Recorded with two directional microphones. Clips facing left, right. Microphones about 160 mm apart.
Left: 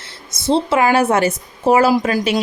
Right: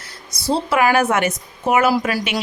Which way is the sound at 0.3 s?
25° left (ahead or behind).